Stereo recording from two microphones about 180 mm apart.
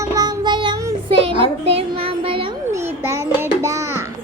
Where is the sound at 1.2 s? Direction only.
30° right (ahead or behind).